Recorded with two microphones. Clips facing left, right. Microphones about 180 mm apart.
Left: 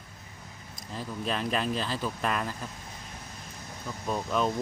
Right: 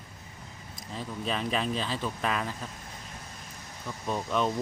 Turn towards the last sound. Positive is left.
turn(degrees=0)  # may be behind; listen again after turning